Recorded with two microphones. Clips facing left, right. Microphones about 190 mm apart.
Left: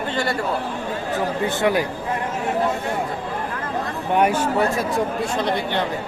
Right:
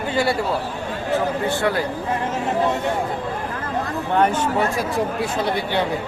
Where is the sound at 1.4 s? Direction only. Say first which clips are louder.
Left 1 dB; 15° left (ahead or behind).